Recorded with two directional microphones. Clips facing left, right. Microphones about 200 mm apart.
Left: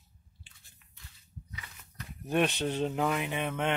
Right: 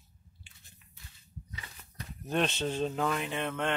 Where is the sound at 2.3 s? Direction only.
15° left (ahead or behind).